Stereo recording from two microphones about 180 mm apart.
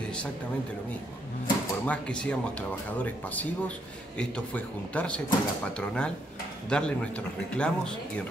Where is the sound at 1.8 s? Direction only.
5° left (ahead or behind).